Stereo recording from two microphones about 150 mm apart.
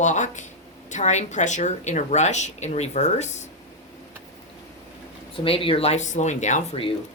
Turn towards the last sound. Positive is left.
turn(degrees=55)  # may be behind; listen again after turning